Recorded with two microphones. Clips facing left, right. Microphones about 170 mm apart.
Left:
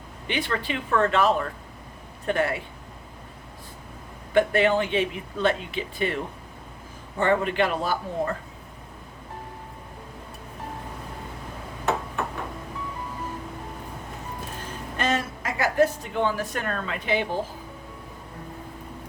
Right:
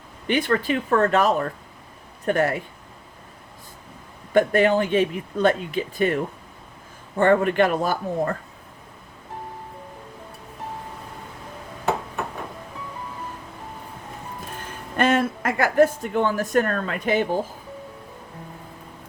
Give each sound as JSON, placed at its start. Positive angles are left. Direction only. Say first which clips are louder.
{"t": 0.3, "sound": "speech", "louder": "right 7 dB", "side_deg": -45}
{"t": 4.4, "sound": "speech", "louder": "right 3 dB", "side_deg": -40}
{"t": 7.2, "sound": "speech", "louder": "right 5 dB", "side_deg": -50}
{"t": 14.9, "sound": "speech", "louder": "right 7 dB", "side_deg": -55}